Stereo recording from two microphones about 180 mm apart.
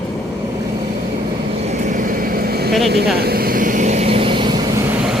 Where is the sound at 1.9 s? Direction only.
50° right (ahead or behind); by 4.6 s 25° right (ahead or behind).